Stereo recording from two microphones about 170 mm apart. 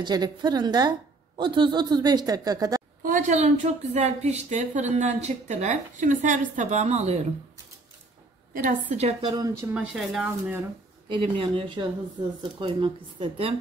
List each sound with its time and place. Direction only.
0.0 s a woman's voice: 25° right (ahead or behind)
3.0 s a woman's voice: 50° right (ahead or behind)
8.5 s a woman's voice: 50° right (ahead or behind)
9.2 s a woman's voice: 20° right (ahead or behind)
9.8 s speech: 5° right (ahead or behind)
11.1 s a woman's voice: 30° right (ahead or behind)